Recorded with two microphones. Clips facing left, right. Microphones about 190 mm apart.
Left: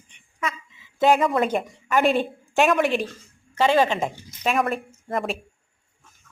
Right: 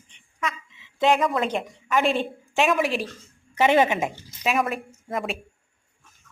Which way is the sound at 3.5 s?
20° right (ahead or behind).